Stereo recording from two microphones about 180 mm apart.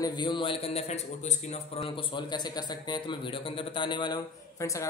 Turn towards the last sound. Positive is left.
turn(degrees=15)  # may be behind; listen again after turning